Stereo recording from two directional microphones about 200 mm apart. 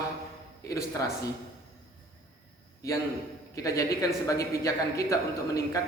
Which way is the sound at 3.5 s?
15° left (ahead or behind).